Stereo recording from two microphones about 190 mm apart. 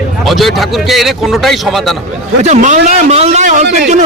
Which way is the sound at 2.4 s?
40° right (ahead or behind).